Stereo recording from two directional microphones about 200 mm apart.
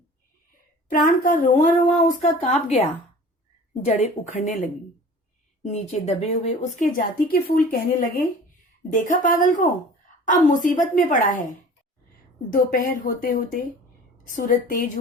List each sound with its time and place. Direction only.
0.9 s a woman's voice: 45° left (ahead or behind)
12.5 s a woman's voice: 45° left (ahead or behind)